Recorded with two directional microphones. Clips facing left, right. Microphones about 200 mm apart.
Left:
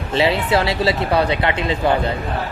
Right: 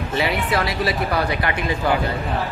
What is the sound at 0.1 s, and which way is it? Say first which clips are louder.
A man's voice: left 5 dB; 25° left (ahead or behind).